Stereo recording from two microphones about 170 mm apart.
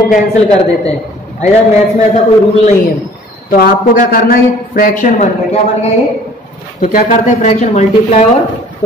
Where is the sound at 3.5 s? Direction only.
55° left (ahead or behind).